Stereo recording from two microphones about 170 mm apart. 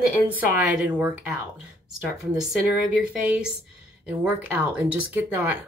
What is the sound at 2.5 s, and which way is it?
Speech, 5° right (ahead or behind).